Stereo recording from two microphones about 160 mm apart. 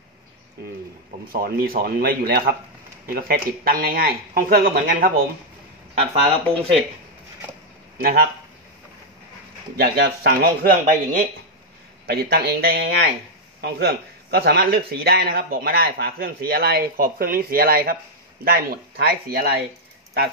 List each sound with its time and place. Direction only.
1.3 s speech: 65° right (ahead or behind)
5.9 s speech: 35° right (ahead or behind)
8.0 s speech: 70° right (ahead or behind)
9.8 s speech: 85° right; by 11.2 s 65° right (ahead or behind)
12.1 s speech: 85° right
13.6 s speech: 90° right; by 19.5 s 70° right (ahead or behind)